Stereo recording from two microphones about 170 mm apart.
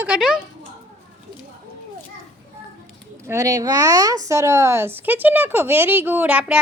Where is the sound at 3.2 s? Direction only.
20° right (ahead or behind).